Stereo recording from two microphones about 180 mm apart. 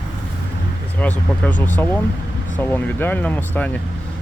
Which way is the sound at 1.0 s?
10° left (ahead or behind).